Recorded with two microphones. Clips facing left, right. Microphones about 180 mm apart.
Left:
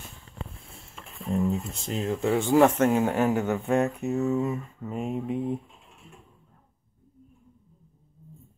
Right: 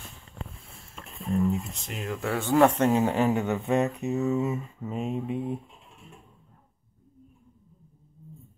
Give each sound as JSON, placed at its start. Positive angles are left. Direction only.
{"t": 1.5, "sound": "speech", "side_deg": 30}
{"t": 2.5, "sound": "speech", "side_deg": 5}
{"t": 4.9, "sound": "speech", "side_deg": 15}